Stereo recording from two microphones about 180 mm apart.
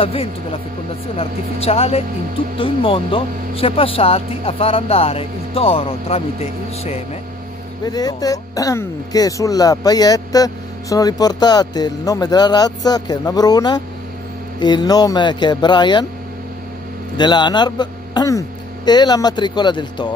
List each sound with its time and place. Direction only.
0.0 s speech: 30° left (ahead or behind)
7.8 s speech: 20° left (ahead or behind)
17.2 s speech: 25° left (ahead or behind)